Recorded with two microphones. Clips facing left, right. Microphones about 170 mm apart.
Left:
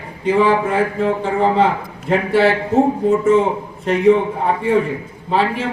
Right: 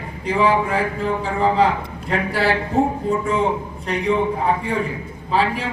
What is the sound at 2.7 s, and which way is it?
Speech, 40° left (ahead or behind).